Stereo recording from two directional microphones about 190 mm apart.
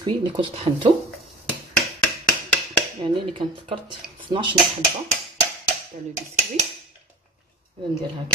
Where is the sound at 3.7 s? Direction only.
25° right (ahead or behind).